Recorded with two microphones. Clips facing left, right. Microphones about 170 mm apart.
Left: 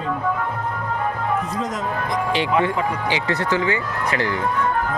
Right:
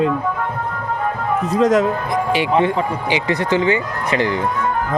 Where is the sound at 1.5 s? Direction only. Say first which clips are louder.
Right 12 dB; 75° right (ahead or behind).